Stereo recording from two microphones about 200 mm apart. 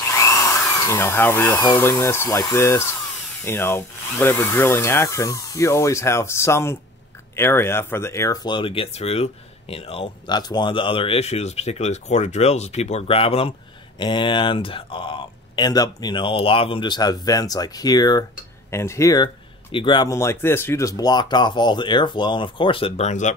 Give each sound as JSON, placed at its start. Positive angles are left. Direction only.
{"t": 0.1, "sound": "speech", "side_deg": 15}